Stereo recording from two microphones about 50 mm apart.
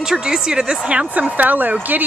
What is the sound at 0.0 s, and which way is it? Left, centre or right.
Speech, centre.